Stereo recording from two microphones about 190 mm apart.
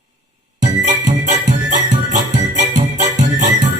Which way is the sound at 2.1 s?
40° right (ahead or behind).